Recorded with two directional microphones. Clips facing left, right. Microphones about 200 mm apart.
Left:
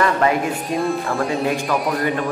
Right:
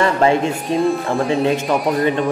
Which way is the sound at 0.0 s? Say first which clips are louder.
Right 3 dB; 25° right (ahead or behind).